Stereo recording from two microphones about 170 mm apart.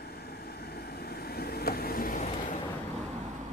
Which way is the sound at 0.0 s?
65° left (ahead or behind).